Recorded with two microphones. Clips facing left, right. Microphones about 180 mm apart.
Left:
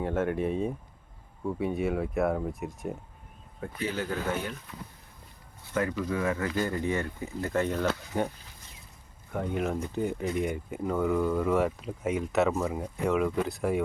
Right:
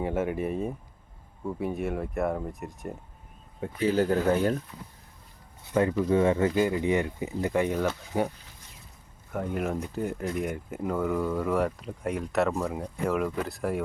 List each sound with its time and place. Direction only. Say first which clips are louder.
0.0 s speech: even; 10° right (ahead or behind)
3.9 s speech: right 9 dB; 40° right (ahead or behind)
5.7 s speech: right 6 dB; 25° right (ahead or behind)
6.5 s speech: right 4 dB; 15° right (ahead or behind)
9.3 s speech: even; 5° right (ahead or behind)